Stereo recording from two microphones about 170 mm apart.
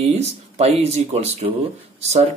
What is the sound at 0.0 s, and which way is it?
Speech, 40° right (ahead or behind).